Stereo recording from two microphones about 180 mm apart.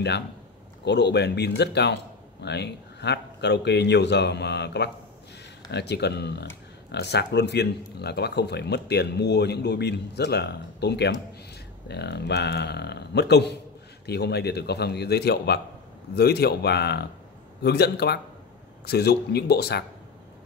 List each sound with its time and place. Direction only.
0.8 s a man's voice: 70° left (ahead or behind)